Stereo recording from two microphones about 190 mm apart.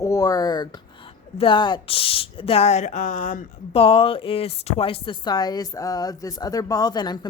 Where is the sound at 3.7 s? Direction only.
30° left (ahead or behind).